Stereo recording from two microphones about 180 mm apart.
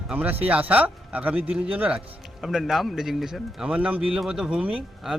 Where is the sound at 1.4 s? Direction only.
35° right (ahead or behind).